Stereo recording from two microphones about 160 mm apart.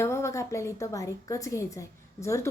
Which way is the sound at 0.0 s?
15° left (ahead or behind).